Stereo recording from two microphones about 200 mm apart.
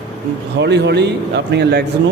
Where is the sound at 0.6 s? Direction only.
60° right (ahead or behind).